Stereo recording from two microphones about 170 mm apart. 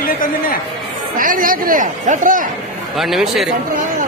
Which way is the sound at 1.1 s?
55° right (ahead or behind).